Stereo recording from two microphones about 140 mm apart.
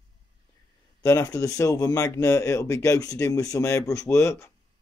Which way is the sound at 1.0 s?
20° left (ahead or behind).